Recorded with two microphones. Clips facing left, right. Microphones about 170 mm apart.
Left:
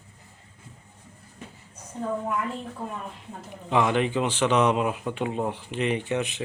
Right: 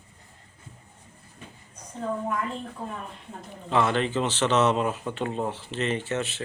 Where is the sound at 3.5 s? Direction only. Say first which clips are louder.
Left 1 dB; 15° left (ahead or behind).